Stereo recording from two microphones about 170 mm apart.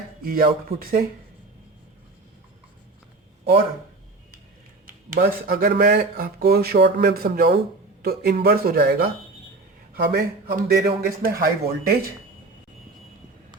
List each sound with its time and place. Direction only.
0.2 s speech: 60° right (ahead or behind)
4.9 s speech: 55° right (ahead or behind)